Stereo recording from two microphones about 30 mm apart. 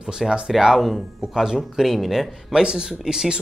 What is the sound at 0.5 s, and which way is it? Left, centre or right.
Speech, centre.